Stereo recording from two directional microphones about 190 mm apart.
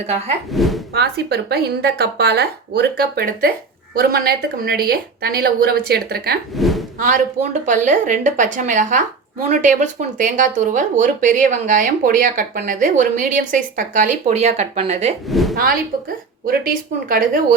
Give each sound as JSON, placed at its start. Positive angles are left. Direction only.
{"t": 0.5, "sound": "a woman's voice", "side_deg": 0}
{"t": 0.9, "sound": "speech", "side_deg": -55}
{"t": 6.6, "sound": "a sound", "side_deg": 0}
{"t": 7.6, "sound": "speech", "side_deg": -40}
{"t": 15.3, "sound": "a woman's voice", "side_deg": 0}
{"t": 15.5, "sound": "speech", "side_deg": -50}